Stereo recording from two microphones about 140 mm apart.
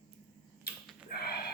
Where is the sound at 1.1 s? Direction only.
90° left.